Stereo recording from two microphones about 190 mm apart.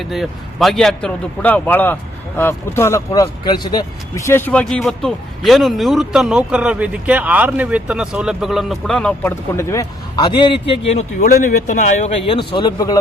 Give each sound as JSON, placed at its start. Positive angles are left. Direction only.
{"t": 0.0, "sound": "a man's voice", "side_deg": 0}
{"t": 11.2, "sound": "speech", "side_deg": 45}